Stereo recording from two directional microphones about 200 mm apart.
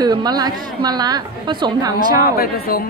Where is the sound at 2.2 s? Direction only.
50° left (ahead or behind).